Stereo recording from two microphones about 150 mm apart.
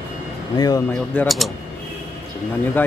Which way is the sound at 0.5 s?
25° left (ahead or behind).